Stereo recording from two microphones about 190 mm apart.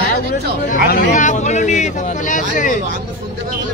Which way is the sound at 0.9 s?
45° left (ahead or behind).